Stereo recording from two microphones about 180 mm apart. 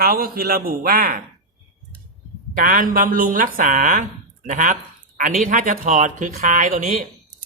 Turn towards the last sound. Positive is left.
turn(degrees=-45)  # may be behind; listen again after turning